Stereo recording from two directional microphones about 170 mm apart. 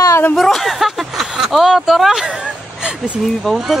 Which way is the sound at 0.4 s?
Centre (ahead or behind).